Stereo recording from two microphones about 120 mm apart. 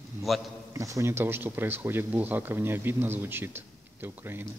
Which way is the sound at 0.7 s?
25° right (ahead or behind).